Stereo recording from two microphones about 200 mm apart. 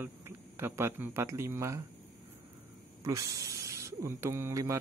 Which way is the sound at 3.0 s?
15° right (ahead or behind).